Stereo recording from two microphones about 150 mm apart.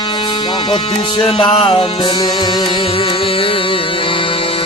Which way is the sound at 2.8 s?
40° left (ahead or behind).